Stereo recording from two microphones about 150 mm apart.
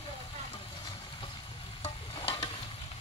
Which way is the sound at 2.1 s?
40° left (ahead or behind).